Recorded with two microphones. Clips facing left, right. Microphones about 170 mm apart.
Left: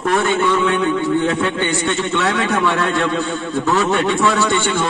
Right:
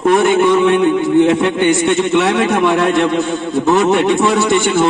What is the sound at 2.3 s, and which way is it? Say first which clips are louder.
A man's voice: right 5 dB; 20° right (ahead or behind).